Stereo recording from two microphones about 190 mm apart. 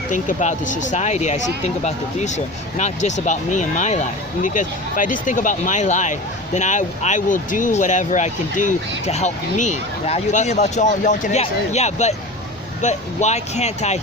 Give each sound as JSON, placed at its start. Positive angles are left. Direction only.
{"t": 0.1, "sound": "speech", "side_deg": 40}